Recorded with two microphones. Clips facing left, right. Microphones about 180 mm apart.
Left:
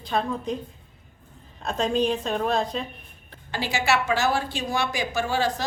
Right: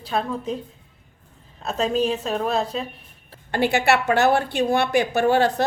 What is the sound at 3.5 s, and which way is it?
A woman's voice, 60° right (ahead or behind).